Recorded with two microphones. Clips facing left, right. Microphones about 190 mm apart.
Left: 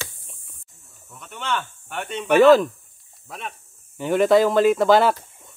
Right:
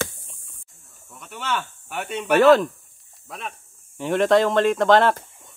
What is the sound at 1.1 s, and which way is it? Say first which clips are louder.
Speech: even; 5° right (ahead or behind).